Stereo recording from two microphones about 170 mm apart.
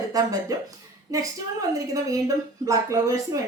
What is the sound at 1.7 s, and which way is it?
A woman's voice, 20° right (ahead or behind).